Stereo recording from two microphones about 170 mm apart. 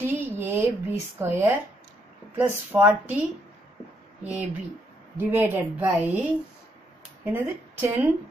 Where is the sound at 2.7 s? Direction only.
10° right (ahead or behind).